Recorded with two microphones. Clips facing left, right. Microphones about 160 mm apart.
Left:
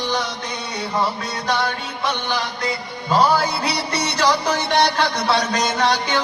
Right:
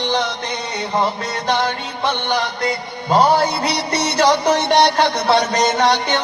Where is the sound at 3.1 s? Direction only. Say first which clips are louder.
Right 3 dB; 25° right (ahead or behind).